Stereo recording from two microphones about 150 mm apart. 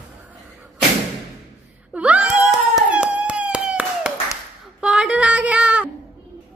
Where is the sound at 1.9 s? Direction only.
10° right (ahead or behind).